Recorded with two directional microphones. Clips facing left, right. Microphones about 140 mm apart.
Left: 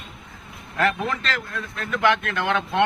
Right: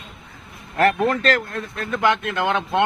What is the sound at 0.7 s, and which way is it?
Speech, 45° right (ahead or behind).